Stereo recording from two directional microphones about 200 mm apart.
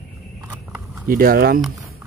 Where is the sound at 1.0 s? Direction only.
50° right (ahead or behind).